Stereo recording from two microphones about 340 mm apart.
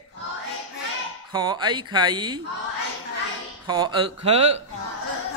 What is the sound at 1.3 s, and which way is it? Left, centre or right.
Speech, centre.